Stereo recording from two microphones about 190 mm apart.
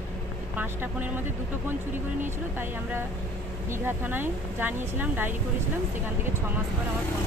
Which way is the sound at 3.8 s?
10° right (ahead or behind).